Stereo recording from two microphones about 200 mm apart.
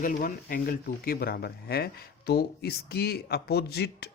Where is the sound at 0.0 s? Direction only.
45° left (ahead or behind).